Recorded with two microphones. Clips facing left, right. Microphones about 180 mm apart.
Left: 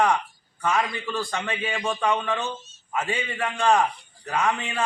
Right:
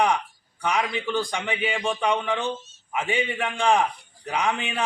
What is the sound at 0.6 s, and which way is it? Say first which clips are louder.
A man's voice: even; 15° right (ahead or behind).